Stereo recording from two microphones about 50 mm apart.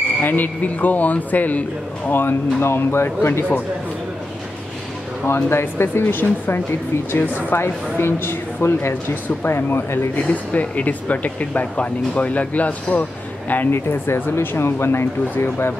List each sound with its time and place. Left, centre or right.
0.2 s speech: left
2.0 s speech: left
5.2 s speech: left
7.5 s speech: left
10.1 s speech: left
13.7 s speech: left